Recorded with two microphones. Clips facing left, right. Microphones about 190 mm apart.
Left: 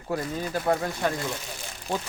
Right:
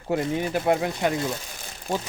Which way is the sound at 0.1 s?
25° right (ahead or behind).